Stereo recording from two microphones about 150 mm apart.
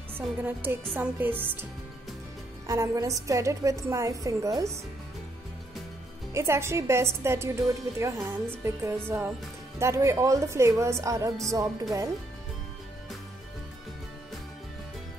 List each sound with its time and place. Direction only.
0.2 s a woman's voice: 10° right (ahead or behind)
6.3 s a woman's voice: 20° right (ahead or behind)